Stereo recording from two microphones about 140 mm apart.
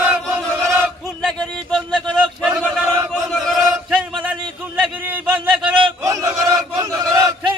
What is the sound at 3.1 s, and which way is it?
Chant, 5° left (ahead or behind).